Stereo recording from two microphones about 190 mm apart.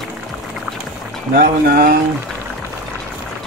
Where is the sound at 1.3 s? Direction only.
50° right (ahead or behind).